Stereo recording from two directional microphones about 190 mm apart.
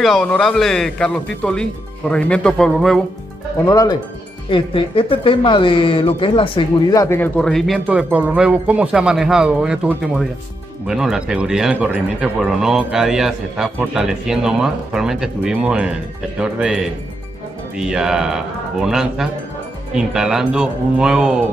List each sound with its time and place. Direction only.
0.0 s speech: 5° left (ahead or behind)
3.6 s speech: 20° left (ahead or behind); by 21.4 s 5° right (ahead or behind)